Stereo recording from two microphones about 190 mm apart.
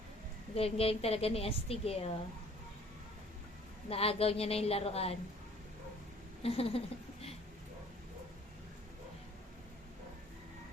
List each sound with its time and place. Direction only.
0.5 s a woman's voice: 30° left (ahead or behind)
3.8 s a woman's voice: 30° left (ahead or behind)
6.4 s a sound: 30° left (ahead or behind)